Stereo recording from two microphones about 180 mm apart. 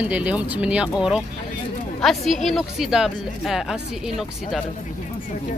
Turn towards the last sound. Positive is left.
turn(degrees=0)  # may be behind; listen again after turning